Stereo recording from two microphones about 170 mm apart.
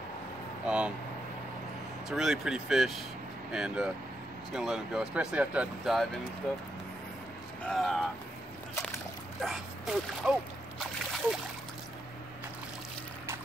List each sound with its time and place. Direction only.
0.7 s speech: 5° right (ahead or behind)
2.0 s speech: centre (ahead or behind)
7.6 s speech: centre (ahead or behind)
9.4 s speech: centre (ahead or behind)